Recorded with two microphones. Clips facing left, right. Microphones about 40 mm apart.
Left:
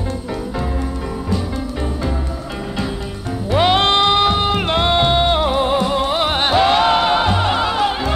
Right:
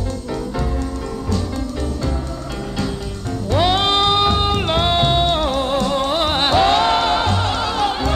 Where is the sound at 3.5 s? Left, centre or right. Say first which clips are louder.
Left 2 dB; left.